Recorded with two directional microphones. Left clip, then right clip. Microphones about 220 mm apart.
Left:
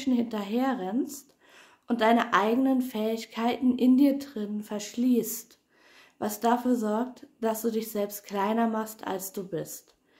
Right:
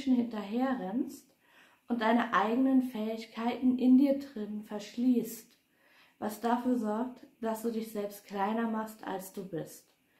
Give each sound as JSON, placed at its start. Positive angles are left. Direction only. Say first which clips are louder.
{"t": 0.0, "sound": "speech", "louder": "left 3 dB", "side_deg": 50}